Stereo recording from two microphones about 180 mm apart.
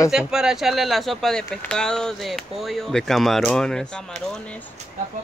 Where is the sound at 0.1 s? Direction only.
5° right (ahead or behind).